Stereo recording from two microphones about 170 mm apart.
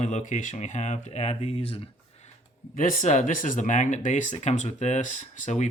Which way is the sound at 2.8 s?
50° left (ahead or behind).